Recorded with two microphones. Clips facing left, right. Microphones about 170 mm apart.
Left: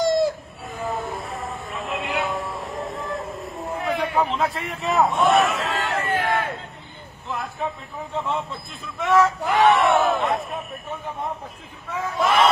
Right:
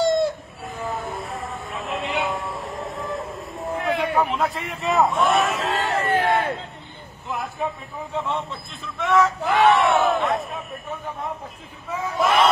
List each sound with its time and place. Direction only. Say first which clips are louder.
0.0 s chicken: even; centre (ahead or behind)
5.9 s crowd: right 3 dB; 35° right (ahead or behind)
8.1 s speech: even; centre (ahead or behind)
12.2 s speech: even; centre (ahead or behind)